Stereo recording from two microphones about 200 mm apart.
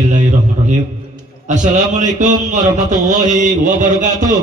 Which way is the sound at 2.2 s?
40° right (ahead or behind).